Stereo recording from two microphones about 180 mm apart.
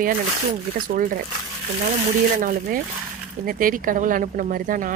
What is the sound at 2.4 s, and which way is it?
Speech, 50° right (ahead or behind).